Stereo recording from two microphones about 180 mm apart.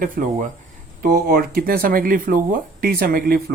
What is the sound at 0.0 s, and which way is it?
Speech, 50° right (ahead or behind).